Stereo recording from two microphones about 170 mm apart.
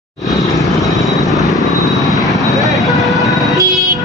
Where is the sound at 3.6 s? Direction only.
20° right (ahead or behind).